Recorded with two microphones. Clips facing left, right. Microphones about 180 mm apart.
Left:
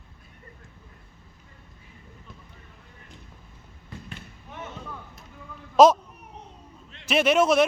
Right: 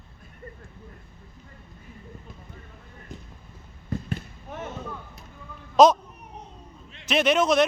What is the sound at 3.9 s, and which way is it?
Fireworks, 45° right (ahead or behind).